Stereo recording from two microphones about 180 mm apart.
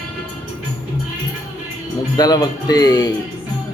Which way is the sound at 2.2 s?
20° left (ahead or behind).